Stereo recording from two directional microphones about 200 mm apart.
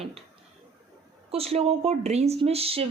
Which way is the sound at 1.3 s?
30° right (ahead or behind).